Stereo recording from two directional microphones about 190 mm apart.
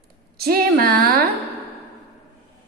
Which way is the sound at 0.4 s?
55° right (ahead or behind).